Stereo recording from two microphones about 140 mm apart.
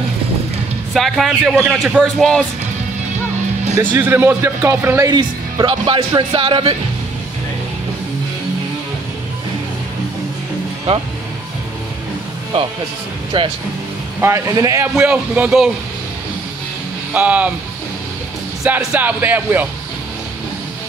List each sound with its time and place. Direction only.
0.9 s speech: centre (ahead or behind)
3.7 s a man's voice: 15° right (ahead or behind)
5.1 s speech: 35° right (ahead or behind)
13.3 s speech: 40° right (ahead or behind)
14.2 s a man's voice: 20° right (ahead or behind)
17.1 s a man's voice: 10° right (ahead or behind)
18.6 s a man's voice: 10° right (ahead or behind)